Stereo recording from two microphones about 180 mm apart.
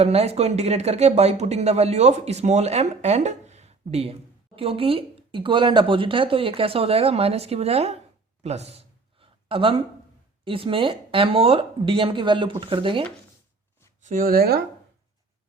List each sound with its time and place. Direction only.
0.0 s speech: 35° right (ahead or behind)
8.4 s a sound: 35° right (ahead or behind)
10.4 s speech: 30° right (ahead or behind)
14.0 s speech: 50° right (ahead or behind)